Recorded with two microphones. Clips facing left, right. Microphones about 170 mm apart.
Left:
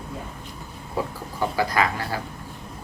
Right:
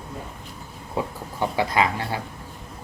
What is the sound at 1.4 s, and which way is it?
Speech, 25° right (ahead or behind).